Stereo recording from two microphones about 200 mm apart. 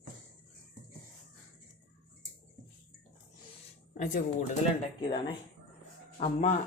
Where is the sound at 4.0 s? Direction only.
40° left (ahead or behind).